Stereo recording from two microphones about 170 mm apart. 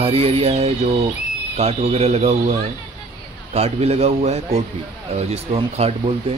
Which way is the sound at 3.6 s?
40° right (ahead or behind).